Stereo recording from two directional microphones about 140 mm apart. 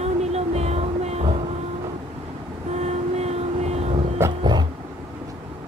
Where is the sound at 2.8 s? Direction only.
50° right (ahead or behind).